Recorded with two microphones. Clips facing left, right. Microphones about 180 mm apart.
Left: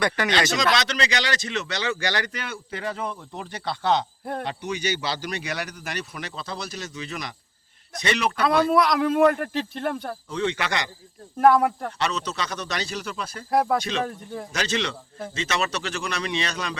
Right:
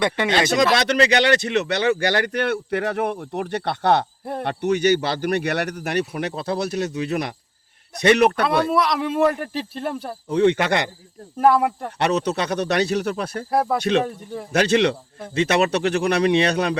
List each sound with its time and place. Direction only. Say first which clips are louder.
0.0 s speech: right 3 dB; 25° right (ahead or behind)
0.8 s speech: right 8 dB; 55° right (ahead or behind)
8.7 s speech: left 1 dB; centre (ahead or behind)
10.2 s speech: right 10 dB; 60° right (ahead or behind)
11.3 s speech: right 1 dB; centre (ahead or behind)
11.9 s speech: right 7 dB; 60° right (ahead or behind)
13.5 s speech: even; centre (ahead or behind)
14.5 s speech: right 11 dB; 60° right (ahead or behind)